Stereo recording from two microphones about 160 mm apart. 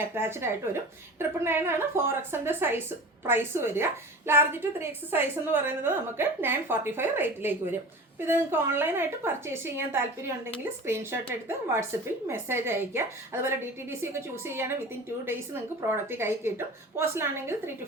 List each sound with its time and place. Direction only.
0.1 s a woman's voice: 15° right (ahead or behind)
16.0 s a woman's voice: 15° right (ahead or behind)